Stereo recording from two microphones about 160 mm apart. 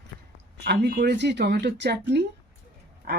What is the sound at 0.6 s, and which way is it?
Speech, 90° right.